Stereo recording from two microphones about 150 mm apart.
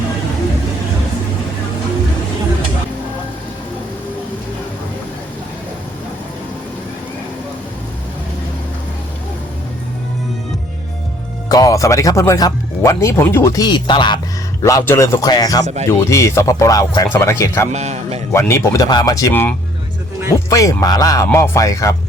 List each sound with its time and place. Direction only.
11.4 s speech: 25° left (ahead or behind)
14.6 s speech: 20° left (ahead or behind)
15.6 s speech: 50° right (ahead or behind)
15.9 s speech: 20° left (ahead or behind)
17.7 s speech: 45° right (ahead or behind)
18.3 s speech: 20° left (ahead or behind)